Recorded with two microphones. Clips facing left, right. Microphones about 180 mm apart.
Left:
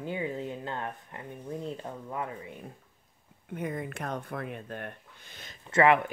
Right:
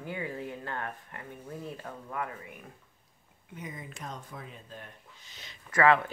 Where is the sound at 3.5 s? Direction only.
60° left (ahead or behind).